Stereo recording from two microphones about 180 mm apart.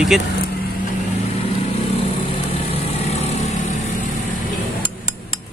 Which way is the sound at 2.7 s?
35° left (ahead or behind).